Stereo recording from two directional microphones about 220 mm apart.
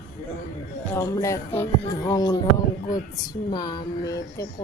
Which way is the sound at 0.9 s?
15° left (ahead or behind).